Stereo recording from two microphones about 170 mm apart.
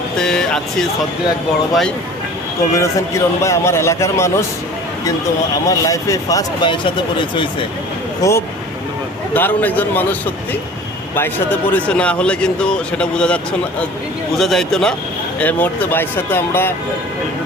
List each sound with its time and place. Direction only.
0.2 s speech: 5° left (ahead or behind)
2.7 s speech: 15° left (ahead or behind)
5.6 s speech: 20° left (ahead or behind)